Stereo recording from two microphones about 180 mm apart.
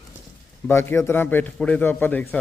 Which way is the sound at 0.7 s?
15° left (ahead or behind).